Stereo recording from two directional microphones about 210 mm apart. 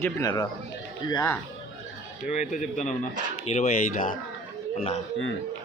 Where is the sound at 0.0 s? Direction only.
15° left (ahead or behind).